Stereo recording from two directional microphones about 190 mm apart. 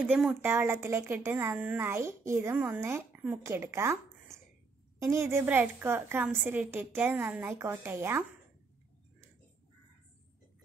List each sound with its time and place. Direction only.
0.0 s a woman's voice: 5° right (ahead or behind)